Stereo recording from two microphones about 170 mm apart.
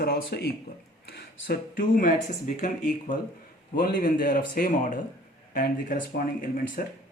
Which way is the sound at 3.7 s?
60° left (ahead or behind).